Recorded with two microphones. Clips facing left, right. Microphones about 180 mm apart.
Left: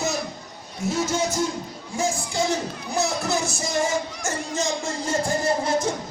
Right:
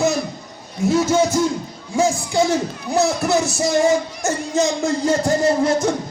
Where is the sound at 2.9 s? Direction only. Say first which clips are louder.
Right 7 dB; 65° right (ahead or behind).